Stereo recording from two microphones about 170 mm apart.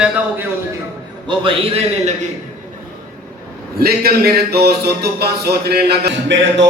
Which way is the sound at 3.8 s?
65° right (ahead or behind).